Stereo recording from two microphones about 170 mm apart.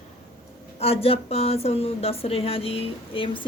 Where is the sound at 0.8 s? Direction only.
35° left (ahead or behind).